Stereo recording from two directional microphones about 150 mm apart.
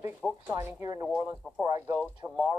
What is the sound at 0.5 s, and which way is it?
Speech, 15° right (ahead or behind).